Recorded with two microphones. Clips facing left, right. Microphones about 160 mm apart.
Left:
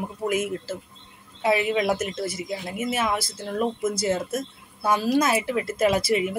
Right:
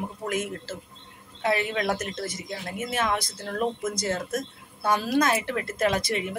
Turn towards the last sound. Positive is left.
turn(degrees=5)  # may be behind; listen again after turning